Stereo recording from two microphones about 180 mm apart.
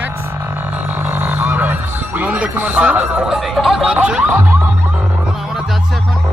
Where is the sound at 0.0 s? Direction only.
10° right (ahead or behind).